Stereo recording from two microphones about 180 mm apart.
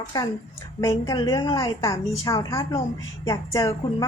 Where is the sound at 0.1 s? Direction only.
20° left (ahead or behind).